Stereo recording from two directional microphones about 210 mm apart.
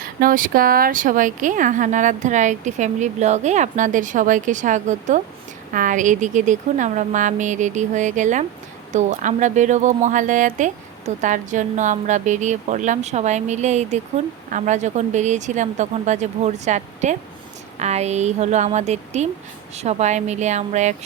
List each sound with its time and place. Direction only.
0.0 s a woman's voice: 40° right (ahead or behind)